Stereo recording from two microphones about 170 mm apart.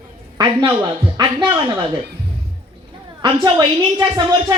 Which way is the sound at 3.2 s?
30° right (ahead or behind).